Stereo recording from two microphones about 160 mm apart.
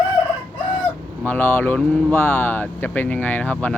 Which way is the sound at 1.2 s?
10° left (ahead or behind).